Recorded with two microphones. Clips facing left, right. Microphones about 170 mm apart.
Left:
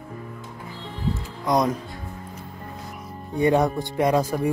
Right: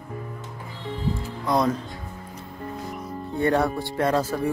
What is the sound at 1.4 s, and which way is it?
Speech, 15° left (ahead or behind).